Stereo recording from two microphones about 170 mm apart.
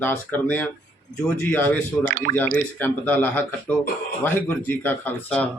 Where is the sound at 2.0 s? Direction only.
50° right (ahead or behind).